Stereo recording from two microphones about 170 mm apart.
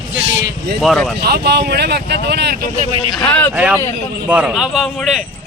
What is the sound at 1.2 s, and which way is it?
Speech, 70° right (ahead or behind).